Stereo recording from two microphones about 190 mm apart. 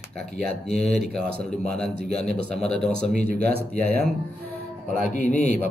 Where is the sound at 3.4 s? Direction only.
55° right (ahead or behind).